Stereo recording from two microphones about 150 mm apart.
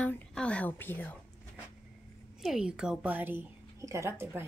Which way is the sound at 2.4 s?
5° right (ahead or behind).